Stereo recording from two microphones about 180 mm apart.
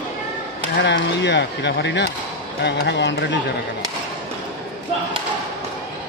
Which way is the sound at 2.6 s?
65° left (ahead or behind).